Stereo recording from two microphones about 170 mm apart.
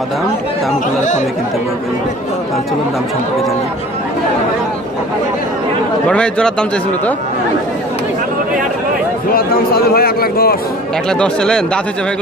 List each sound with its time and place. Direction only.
6.0 s speech: 5° left (ahead or behind)
9.3 s a man's voice: 60° left (ahead or behind)
11.1 s speech: 5° left (ahead or behind)